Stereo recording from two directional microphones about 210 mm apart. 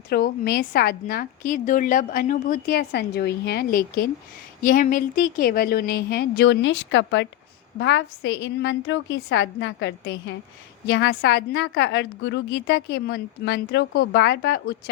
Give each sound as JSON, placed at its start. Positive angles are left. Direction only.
{"t": 0.1, "sound": "a woman's voice", "side_deg": 45}